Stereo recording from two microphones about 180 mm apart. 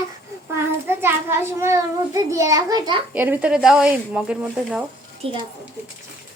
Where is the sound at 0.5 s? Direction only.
15° right (ahead or behind).